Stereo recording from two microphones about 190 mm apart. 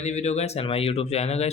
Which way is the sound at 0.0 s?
35° left (ahead or behind).